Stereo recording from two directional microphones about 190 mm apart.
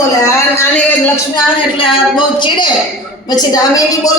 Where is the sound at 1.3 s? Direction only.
25° left (ahead or behind).